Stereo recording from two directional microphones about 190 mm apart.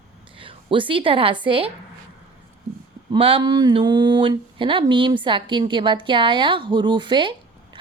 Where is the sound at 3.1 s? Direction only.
30° right (ahead or behind).